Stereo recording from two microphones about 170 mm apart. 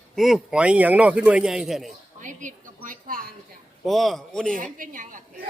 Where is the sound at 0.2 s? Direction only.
Centre (ahead or behind).